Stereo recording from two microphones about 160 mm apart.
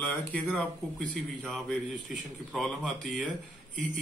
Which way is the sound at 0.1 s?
10° left (ahead or behind).